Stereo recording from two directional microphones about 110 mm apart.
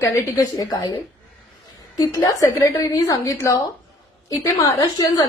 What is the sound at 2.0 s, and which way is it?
A woman's voice, 30° left (ahead or behind).